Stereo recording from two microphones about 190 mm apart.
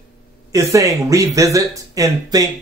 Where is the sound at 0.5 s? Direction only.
15° right (ahead or behind).